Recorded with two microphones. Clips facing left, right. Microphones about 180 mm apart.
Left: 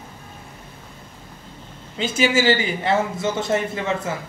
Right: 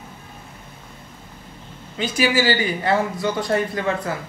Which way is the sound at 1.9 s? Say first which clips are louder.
Even; 25° left (ahead or behind).